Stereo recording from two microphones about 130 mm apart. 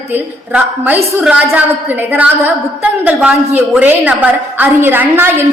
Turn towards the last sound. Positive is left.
turn(degrees=-15)  # may be behind; listen again after turning